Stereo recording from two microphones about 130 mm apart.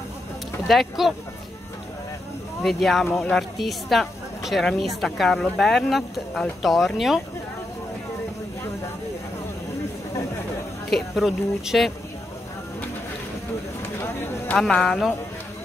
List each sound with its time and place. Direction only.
0.7 s speech: centre (ahead or behind)
2.6 s speech: centre (ahead or behind)
10.9 s speech: centre (ahead or behind)
13.8 s a sound: 20° left (ahead or behind)
14.6 s speech: 5° left (ahead or behind)